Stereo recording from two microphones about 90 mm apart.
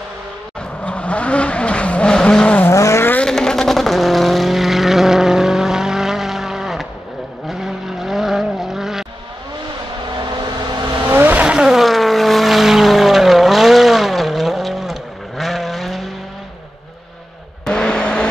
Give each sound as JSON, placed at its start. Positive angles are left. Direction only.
{"t": 0.6, "sound": "vehicle", "side_deg": 15}
{"t": 2.7, "sound": "vehicle", "side_deg": 35}
{"t": 3.3, "sound": "vehicle", "side_deg": 5}
{"t": 11.1, "sound": "vehicle", "side_deg": -25}
{"t": 11.4, "sound": "vehicle", "side_deg": -5}
{"t": 17.6, "sound": "vehicle", "side_deg": 10}